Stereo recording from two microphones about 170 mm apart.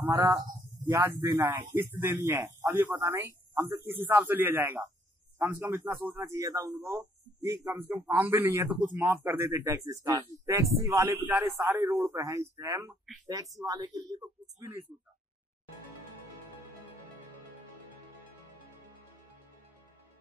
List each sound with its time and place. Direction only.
0.0 s a man's voice: 15° right (ahead or behind)